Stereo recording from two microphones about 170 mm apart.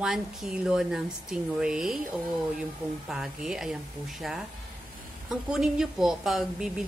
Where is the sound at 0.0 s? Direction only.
5° right (ahead or behind).